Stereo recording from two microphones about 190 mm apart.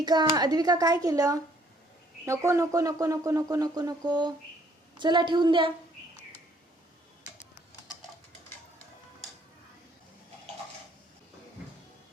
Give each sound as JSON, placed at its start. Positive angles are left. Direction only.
{"t": 0.0, "sound": "speech", "side_deg": -20}